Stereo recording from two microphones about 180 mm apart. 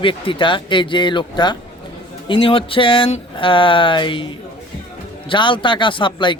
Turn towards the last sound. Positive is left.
turn(degrees=25)  # may be behind; listen again after turning